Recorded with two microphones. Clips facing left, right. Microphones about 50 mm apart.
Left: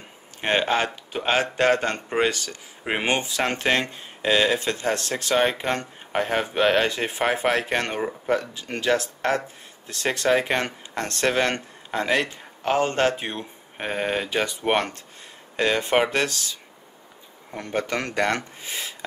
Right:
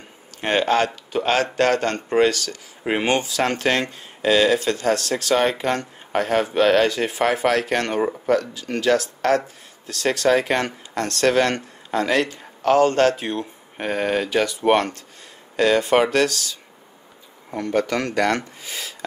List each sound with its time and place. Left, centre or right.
0.4 s speech: left
17.6 s speech: left